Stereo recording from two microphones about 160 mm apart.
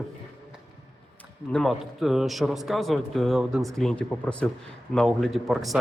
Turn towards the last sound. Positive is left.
turn(degrees=0)  # may be behind; listen again after turning